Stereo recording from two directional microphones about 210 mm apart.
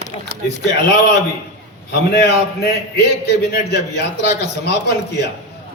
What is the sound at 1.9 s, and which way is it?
A man's voice, 50° left (ahead or behind).